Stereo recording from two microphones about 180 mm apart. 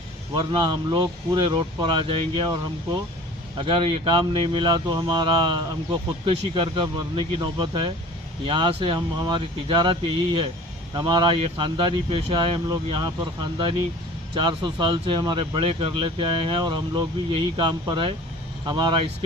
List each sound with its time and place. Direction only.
0.3 s speech: 30° right (ahead or behind)